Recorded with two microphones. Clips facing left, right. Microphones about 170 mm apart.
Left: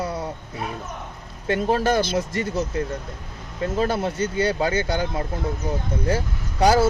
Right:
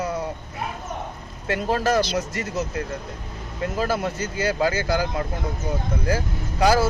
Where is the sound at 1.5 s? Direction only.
25° left (ahead or behind).